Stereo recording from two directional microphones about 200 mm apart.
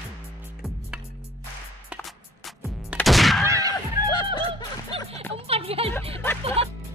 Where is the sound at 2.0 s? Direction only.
5° right (ahead or behind).